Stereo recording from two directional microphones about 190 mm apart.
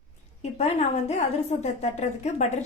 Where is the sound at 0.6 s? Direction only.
35° left (ahead or behind).